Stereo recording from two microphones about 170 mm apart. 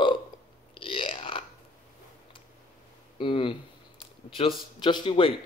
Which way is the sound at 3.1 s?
30° left (ahead or behind).